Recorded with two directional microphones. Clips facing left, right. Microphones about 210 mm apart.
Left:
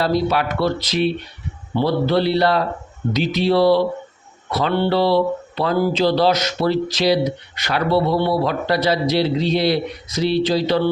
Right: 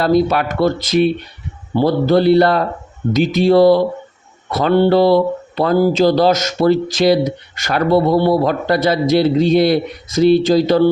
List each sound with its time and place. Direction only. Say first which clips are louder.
0.0 s speech: right 5 dB; 50° right (ahead or behind)